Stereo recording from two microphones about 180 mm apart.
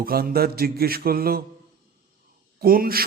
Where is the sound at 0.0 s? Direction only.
55° right (ahead or behind).